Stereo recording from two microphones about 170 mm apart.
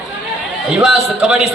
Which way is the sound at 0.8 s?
5° right (ahead or behind).